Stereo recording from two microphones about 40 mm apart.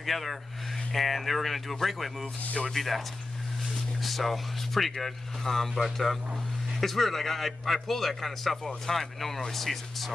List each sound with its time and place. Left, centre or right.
0.0 s a man's voice: centre
2.4 s speech: left
2.7 s a man's voice: centre
4.0 s a man's voice: centre